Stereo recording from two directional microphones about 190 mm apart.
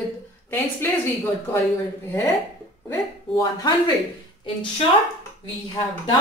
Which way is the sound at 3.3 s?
20° left (ahead or behind).